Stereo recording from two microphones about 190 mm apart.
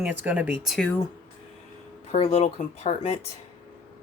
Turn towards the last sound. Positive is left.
turn(degrees=40)  # may be behind; listen again after turning